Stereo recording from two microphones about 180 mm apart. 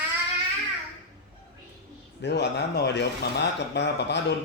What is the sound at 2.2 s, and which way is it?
Mantra, 70° left (ahead or behind).